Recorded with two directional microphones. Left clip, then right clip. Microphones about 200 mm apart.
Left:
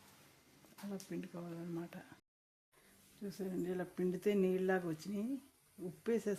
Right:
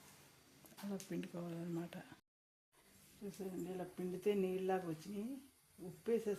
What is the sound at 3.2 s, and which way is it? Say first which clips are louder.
Speech: left 5 dB; 35° left (ahead or behind).